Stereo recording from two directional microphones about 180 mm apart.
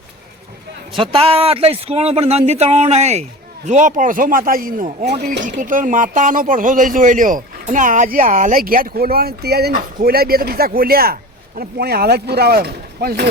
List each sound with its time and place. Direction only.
0.9 s a man's voice: 30° right (ahead or behind); by 13.2 s 60° right (ahead or behind)